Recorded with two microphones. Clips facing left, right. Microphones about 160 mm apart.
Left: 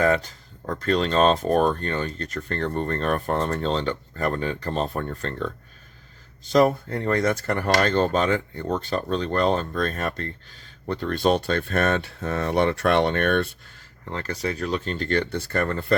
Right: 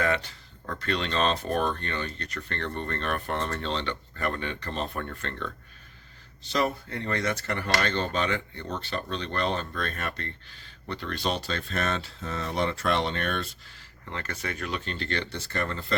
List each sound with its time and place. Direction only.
0.0 s speech: 40° left (ahead or behind)
6.4 s speech: 45° left (ahead or behind)
14.1 s speech: 35° left (ahead or behind)